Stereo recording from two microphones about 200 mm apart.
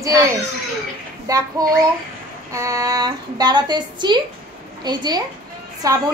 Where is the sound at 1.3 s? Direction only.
15° right (ahead or behind).